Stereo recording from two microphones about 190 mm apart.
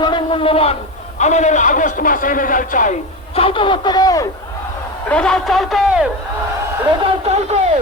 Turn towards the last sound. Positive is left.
turn(degrees=-35)  # may be behind; listen again after turning